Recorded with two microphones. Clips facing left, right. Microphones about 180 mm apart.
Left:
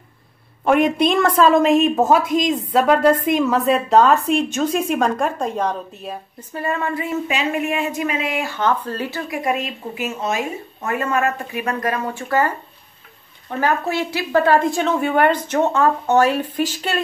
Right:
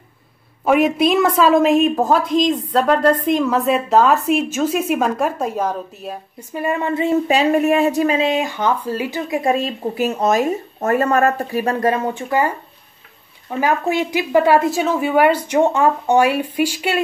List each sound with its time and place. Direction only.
0.7 s a woman's voice: 5° right (ahead or behind)
6.5 s speech: 15° right (ahead or behind)
9.3 s a woman's voice: 30° right (ahead or behind); by 17.0 s 10° right (ahead or behind)